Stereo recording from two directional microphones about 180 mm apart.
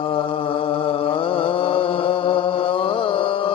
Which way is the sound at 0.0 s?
30° left (ahead or behind).